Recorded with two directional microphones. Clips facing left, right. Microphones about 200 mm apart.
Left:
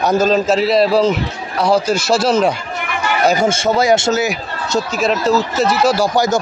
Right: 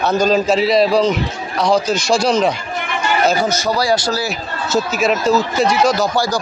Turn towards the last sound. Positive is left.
turn(degrees=20)  # may be behind; listen again after turning